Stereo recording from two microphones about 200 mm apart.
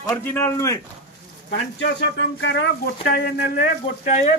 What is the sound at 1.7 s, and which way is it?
Speech, 65° left (ahead or behind).